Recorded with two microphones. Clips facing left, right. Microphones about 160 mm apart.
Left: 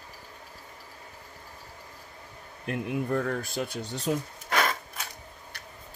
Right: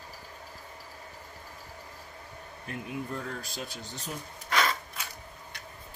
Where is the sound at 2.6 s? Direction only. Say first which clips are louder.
Left 7 dB; 60° left (ahead or behind).